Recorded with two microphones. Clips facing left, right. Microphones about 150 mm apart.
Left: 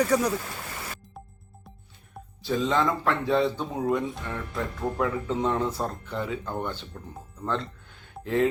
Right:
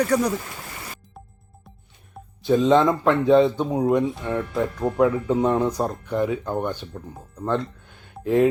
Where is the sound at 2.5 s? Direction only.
20° right (ahead or behind).